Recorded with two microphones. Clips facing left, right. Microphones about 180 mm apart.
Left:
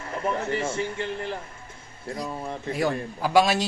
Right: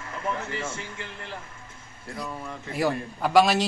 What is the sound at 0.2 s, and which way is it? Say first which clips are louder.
Speech: left 4 dB; 35° left (ahead or behind).